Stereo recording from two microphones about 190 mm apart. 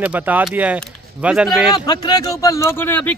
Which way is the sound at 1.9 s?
20° left (ahead or behind).